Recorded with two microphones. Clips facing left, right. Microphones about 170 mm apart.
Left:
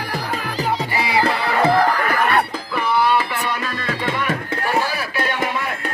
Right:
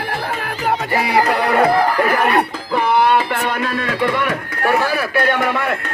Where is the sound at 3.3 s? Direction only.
55° right (ahead or behind).